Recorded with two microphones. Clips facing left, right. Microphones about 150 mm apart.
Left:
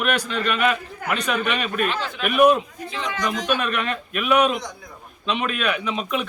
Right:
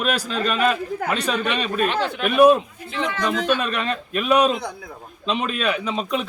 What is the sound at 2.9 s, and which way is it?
Speech, 60° right (ahead or behind).